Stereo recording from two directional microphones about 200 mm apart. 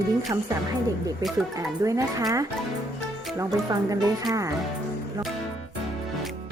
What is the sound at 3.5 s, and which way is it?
Speech, 20° right (ahead or behind).